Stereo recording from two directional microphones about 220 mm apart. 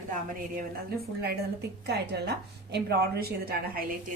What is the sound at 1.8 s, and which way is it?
A woman's voice, 50° right (ahead or behind).